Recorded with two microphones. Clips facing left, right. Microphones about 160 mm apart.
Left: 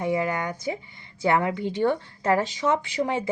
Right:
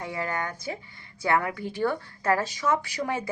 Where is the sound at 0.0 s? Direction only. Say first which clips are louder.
Left 6 dB; 20° left (ahead or behind).